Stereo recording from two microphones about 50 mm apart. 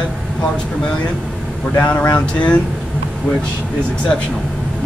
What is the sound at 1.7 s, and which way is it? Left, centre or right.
Speech, left.